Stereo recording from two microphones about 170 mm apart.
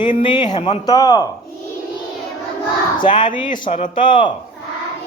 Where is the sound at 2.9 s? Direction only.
50° left (ahead or behind).